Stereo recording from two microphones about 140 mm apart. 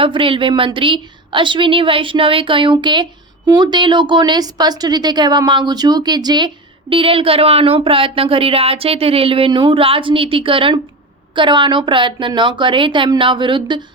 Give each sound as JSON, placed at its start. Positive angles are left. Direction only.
{"t": 0.0, "sound": "a woman's voice", "side_deg": -40}